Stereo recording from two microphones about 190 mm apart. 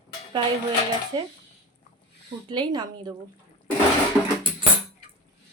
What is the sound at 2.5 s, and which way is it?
Speech, 20° right (ahead or behind).